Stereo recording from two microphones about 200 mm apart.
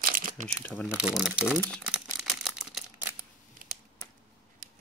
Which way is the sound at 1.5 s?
10° left (ahead or behind).